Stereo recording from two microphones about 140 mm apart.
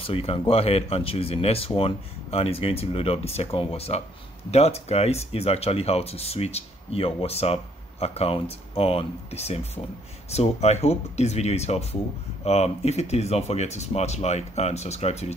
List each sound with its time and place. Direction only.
0.0 s speech: 45° left (ahead or behind)